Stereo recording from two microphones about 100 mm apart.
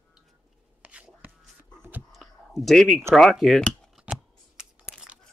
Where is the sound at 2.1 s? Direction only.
Centre (ahead or behind).